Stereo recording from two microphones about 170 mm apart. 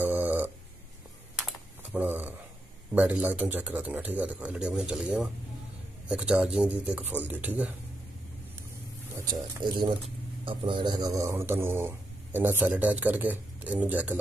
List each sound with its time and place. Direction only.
0.0 s a sound: 10° right (ahead or behind)
1.4 s typing: 10° right (ahead or behind)
2.9 s speech: 10° right (ahead or behind)
9.6 s speech: 60° right (ahead or behind)
10.0 s speech: 30° right (ahead or behind); by 14.1 s 10° right (ahead or behind)